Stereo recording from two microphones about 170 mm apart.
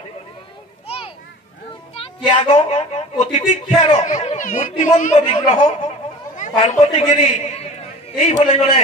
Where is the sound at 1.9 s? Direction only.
30° left (ahead or behind).